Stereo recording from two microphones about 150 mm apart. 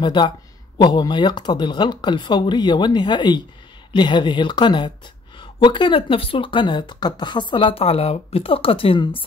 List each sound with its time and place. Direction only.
0.0 s speech: 30° left (ahead or behind)